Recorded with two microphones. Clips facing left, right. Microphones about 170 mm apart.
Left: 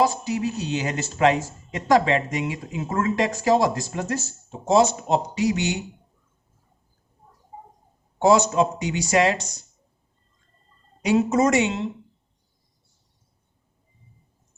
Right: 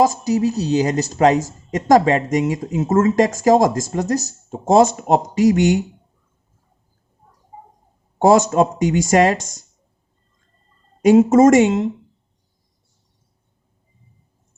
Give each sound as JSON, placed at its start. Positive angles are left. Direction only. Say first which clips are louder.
{"t": 0.0, "sound": "speech", "louder": "right 6 dB", "side_deg": -40}
{"t": 8.2, "sound": "speech", "louder": "right 4 dB", "side_deg": -50}
{"t": 11.0, "sound": "speech", "louder": "right 9 dB", "side_deg": -45}